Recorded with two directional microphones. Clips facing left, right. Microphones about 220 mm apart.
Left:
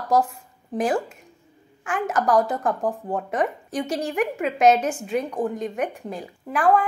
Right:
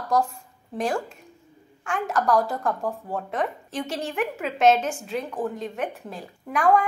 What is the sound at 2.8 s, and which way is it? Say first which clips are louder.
Speech: left 4 dB; 20° left (ahead or behind).